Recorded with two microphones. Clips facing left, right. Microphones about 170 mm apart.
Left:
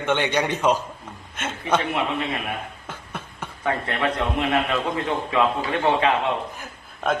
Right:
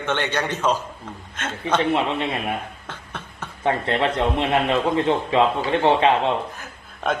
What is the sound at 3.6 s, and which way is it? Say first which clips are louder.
A man's voice: right 3 dB; 25° right (ahead or behind).